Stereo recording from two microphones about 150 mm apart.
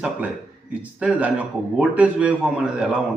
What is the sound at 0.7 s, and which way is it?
A man's voice, 10° right (ahead or behind).